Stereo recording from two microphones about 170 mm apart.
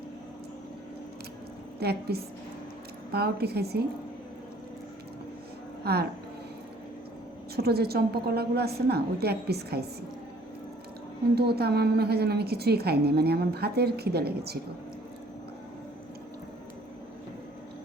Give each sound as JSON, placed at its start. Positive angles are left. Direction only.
{"t": 1.8, "sound": "a woman's voice", "side_deg": -70}
{"t": 5.8, "sound": "a woman's voice", "side_deg": -70}
{"t": 7.5, "sound": "a woman's voice", "side_deg": -70}
{"t": 11.3, "sound": "a woman's voice", "side_deg": -70}